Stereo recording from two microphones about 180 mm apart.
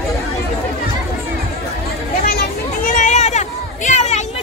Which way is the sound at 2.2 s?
55° left (ahead or behind).